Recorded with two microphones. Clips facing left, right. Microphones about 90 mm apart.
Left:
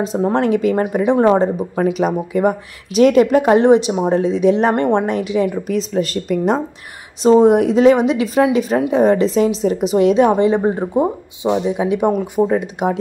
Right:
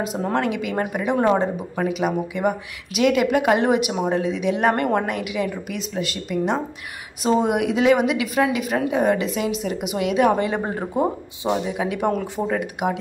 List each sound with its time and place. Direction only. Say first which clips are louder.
0.3 s a woman's voice: left 8 dB; 35° left (ahead or behind)